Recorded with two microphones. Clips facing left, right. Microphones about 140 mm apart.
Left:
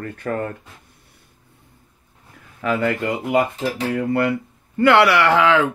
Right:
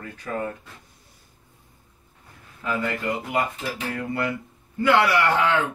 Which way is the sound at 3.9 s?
65° left (ahead or behind).